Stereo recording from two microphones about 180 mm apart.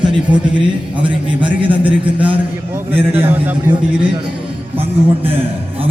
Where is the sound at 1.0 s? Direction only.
30° right (ahead or behind).